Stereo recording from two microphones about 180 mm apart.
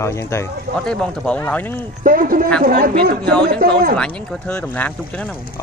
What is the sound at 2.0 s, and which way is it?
Speech, 50° right (ahead or behind).